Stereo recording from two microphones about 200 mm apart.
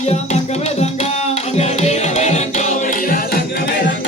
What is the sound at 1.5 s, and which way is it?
Music, 30° left (ahead or behind).